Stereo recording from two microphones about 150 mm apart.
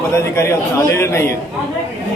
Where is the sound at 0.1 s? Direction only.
20° left (ahead or behind).